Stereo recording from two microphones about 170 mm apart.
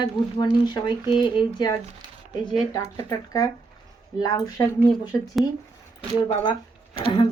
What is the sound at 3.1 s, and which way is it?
Speech, 20° left (ahead or behind).